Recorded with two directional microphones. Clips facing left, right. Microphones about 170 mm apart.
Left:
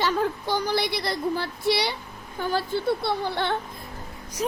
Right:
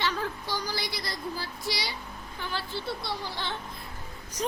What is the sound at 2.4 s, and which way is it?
Speech, 45° left (ahead or behind).